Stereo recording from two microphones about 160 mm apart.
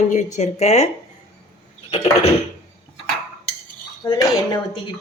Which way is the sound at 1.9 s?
40° left (ahead or behind).